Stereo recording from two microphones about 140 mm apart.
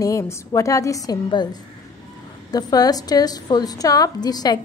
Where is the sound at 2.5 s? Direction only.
30° left (ahead or behind).